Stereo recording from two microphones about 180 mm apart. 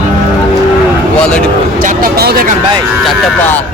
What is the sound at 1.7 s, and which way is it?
Speech, 50° right (ahead or behind).